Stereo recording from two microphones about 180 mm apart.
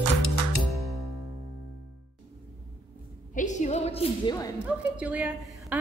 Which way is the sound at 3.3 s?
45° left (ahead or behind).